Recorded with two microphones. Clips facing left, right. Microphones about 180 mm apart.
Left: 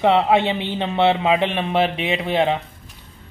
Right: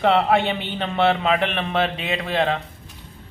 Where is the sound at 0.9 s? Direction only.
20° left (ahead or behind).